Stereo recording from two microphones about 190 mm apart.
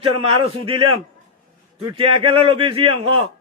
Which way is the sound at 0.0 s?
30° right (ahead or behind).